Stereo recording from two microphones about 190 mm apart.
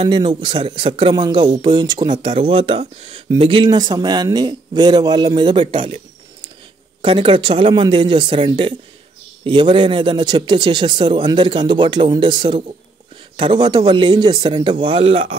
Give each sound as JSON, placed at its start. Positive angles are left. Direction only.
{"t": 0.0, "sound": "speech", "side_deg": -25}
{"t": 7.0, "sound": "speech", "side_deg": -25}